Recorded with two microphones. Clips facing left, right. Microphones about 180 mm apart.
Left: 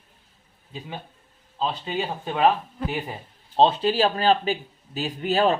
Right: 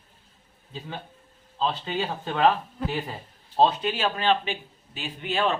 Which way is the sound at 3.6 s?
30° left (ahead or behind).